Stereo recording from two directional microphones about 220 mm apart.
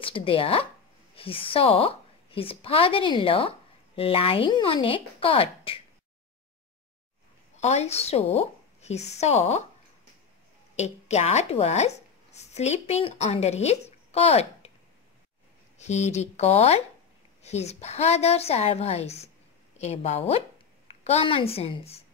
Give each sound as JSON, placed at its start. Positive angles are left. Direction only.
{"t": 0.0, "sound": "a woman's voice", "side_deg": 25}
{"t": 7.5, "sound": "a woman's voice", "side_deg": 30}
{"t": 10.8, "sound": "a woman's voice", "side_deg": 30}
{"t": 15.8, "sound": "a woman's voice", "side_deg": 30}